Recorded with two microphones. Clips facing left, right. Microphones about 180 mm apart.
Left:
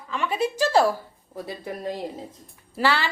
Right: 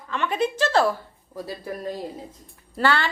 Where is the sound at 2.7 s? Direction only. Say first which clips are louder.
Right 1 dB; 5° left (ahead or behind).